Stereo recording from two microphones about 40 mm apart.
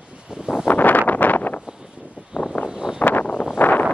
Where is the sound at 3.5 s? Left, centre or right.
Left.